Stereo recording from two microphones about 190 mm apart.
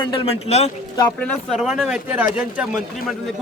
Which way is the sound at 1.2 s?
5° left (ahead or behind).